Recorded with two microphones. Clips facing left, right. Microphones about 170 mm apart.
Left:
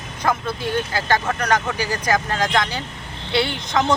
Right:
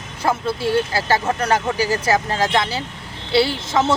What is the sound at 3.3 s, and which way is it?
Speech, 30° right (ahead or behind).